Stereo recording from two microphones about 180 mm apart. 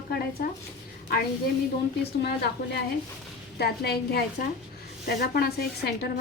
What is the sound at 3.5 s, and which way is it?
A woman's voice, 65° left (ahead or behind).